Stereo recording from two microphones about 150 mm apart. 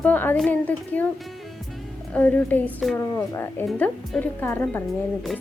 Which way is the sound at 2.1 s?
10° left (ahead or behind).